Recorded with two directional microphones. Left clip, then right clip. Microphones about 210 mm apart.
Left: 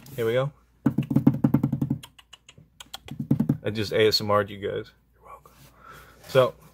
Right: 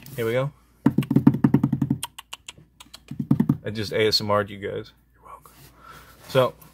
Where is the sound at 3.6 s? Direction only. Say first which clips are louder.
Left 1 dB; 10° left (ahead or behind).